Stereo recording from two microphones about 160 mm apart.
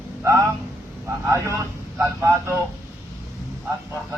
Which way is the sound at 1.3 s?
15° right (ahead or behind).